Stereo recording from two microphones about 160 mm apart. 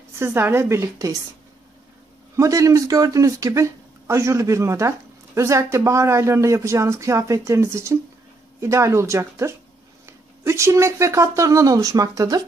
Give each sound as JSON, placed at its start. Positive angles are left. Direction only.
{"t": 0.2, "sound": "a woman's voice", "side_deg": -15}
{"t": 2.3, "sound": "a woman's voice", "side_deg": -20}